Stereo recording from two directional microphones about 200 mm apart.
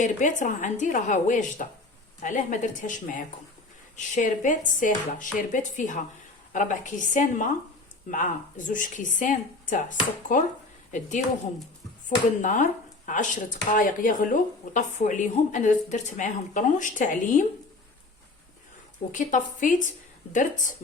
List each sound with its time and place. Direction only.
0.0 s a woman's voice: 40° left (ahead or behind)
19.1 s a woman's voice: 40° left (ahead or behind)